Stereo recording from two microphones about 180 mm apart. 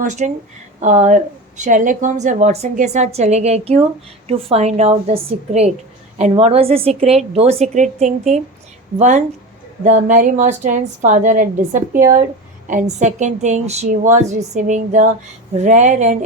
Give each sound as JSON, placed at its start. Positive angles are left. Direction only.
{"t": 0.0, "sound": "a woman's voice", "side_deg": -40}